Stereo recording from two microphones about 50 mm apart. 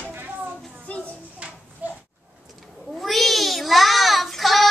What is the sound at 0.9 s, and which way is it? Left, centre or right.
Children playing, left.